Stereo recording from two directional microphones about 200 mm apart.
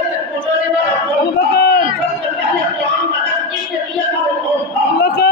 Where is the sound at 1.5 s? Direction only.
55° left (ahead or behind).